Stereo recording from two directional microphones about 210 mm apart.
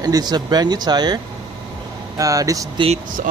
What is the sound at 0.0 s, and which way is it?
Speech, 20° right (ahead or behind).